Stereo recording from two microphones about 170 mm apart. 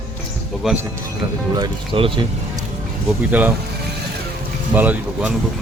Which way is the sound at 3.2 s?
10° right (ahead or behind).